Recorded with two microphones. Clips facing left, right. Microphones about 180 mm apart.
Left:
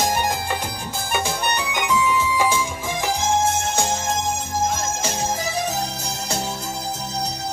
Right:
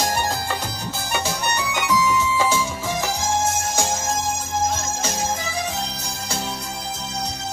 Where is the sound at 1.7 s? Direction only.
15° left (ahead or behind).